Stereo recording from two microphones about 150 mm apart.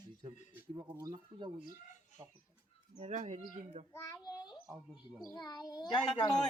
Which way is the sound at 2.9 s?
50° right (ahead or behind).